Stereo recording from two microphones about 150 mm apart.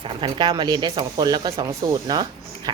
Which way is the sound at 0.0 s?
30° right (ahead or behind).